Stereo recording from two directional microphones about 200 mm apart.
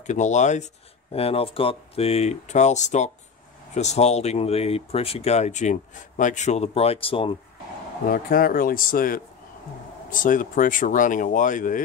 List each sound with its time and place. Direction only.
0.0 s speech: 35° left (ahead or behind)
8.1 s speech: 45° left (ahead or behind)